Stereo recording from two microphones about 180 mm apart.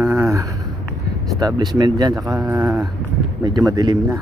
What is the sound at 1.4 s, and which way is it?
Speech, 20° right (ahead or behind).